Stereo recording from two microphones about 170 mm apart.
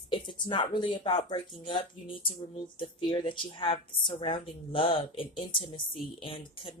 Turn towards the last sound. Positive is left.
turn(degrees=30)  # may be behind; listen again after turning